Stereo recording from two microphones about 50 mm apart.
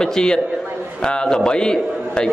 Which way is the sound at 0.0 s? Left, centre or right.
Centre.